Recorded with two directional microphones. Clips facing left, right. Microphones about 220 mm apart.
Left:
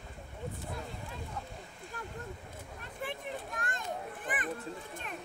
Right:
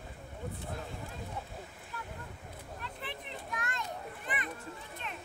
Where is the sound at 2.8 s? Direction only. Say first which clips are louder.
Left 6 dB; 45° left (ahead or behind).